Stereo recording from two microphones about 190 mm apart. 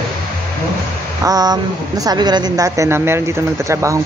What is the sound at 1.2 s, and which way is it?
A woman's voice, 20° right (ahead or behind).